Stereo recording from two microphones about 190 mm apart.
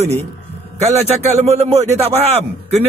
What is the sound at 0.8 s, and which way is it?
A man's voice, 35° right (ahead or behind).